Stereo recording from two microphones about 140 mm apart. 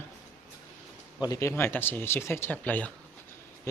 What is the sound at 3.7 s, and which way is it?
Speech, 20° left (ahead or behind).